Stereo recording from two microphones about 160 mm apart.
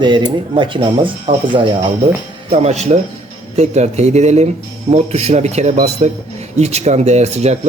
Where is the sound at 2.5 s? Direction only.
40° right (ahead or behind).